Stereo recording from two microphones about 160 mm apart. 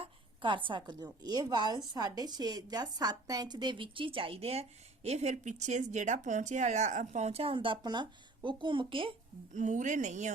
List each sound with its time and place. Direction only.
0.0 s a woman's voice: 30° right (ahead or behind)
9.5 s speech: 50° right (ahead or behind)